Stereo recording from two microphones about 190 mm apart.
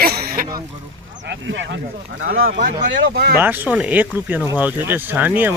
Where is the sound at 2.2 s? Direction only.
90° right.